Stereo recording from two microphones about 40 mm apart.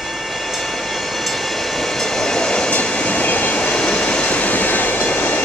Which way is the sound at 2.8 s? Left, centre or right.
Left.